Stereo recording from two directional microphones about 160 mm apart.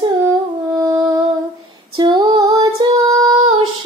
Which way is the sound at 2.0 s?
25° right (ahead or behind).